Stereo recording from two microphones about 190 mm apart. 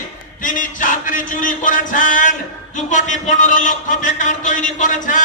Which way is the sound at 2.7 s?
40° left (ahead or behind).